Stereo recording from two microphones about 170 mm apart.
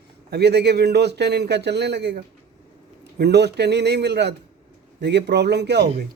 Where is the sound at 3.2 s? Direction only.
75° right (ahead or behind).